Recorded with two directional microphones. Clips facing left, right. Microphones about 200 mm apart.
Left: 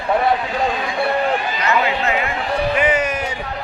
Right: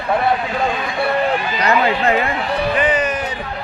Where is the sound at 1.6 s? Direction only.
35° right (ahead or behind).